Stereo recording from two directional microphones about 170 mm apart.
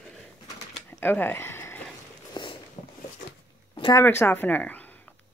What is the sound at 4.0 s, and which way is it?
Speech, 15° left (ahead or behind).